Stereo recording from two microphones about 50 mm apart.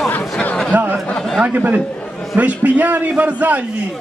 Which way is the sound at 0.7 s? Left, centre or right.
Right.